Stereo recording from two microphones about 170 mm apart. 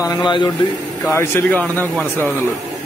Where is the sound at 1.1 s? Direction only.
15° left (ahead or behind).